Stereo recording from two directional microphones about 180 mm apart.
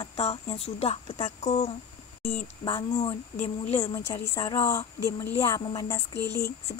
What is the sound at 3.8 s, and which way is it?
Speech, 15° left (ahead or behind).